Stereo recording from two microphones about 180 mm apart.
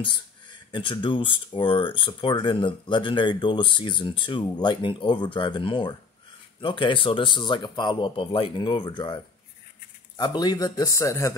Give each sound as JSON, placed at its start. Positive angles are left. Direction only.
{"t": 0.0, "sound": "speech", "side_deg": 25}